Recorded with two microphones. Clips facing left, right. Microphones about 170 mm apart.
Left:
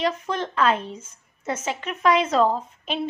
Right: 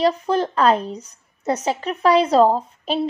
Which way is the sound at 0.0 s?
35° right (ahead or behind).